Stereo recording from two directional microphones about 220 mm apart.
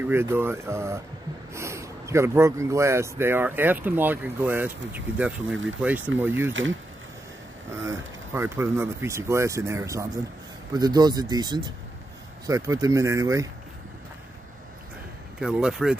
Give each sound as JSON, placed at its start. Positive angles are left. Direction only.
{"t": 0.0, "sound": "speech", "side_deg": -10}
{"t": 7.8, "sound": "speech", "side_deg": -10}
{"t": 15.4, "sound": "speech", "side_deg": 0}